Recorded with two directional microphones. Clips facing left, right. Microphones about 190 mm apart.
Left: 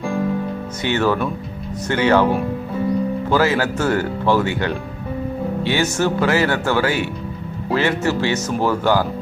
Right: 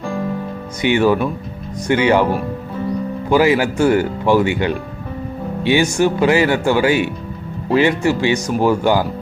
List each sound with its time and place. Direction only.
0.8 s speech: 15° right (ahead or behind)
3.2 s speech: 15° right (ahead or behind)